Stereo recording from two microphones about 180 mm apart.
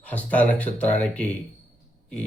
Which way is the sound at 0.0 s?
10° left (ahead or behind).